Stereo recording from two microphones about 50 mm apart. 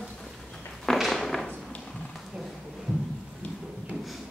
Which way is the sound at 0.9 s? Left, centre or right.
Centre.